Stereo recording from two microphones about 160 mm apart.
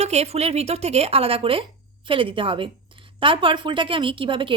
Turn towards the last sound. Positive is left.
turn(degrees=-30)  # may be behind; listen again after turning